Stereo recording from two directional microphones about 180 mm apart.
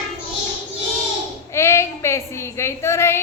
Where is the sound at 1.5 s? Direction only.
15° left (ahead or behind).